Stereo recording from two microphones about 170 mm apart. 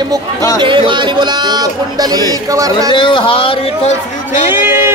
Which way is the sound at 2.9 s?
30° left (ahead or behind).